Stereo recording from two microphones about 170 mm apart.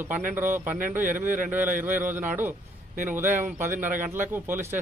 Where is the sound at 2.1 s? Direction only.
10° right (ahead or behind).